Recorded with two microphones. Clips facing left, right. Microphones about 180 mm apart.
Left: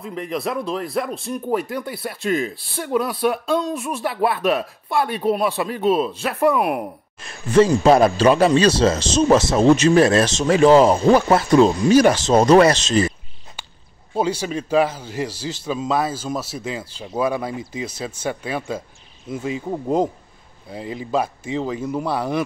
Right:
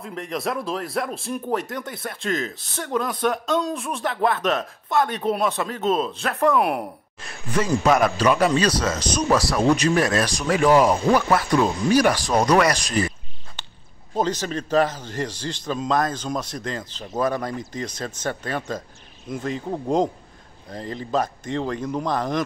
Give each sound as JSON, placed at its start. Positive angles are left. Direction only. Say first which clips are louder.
{"t": 0.0, "sound": "speech", "louder": "left 2 dB", "side_deg": 5}
{"t": 7.5, "sound": "speech", "louder": "left 6 dB", "side_deg": 30}
{"t": 14.1, "sound": "speech", "louder": "left 2 dB", "side_deg": 10}